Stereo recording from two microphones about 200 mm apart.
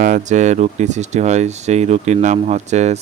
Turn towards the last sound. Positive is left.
turn(degrees=-35)  # may be behind; listen again after turning